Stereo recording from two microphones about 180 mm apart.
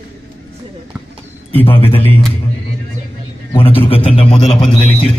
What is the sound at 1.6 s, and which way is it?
Speech, 30° left (ahead or behind).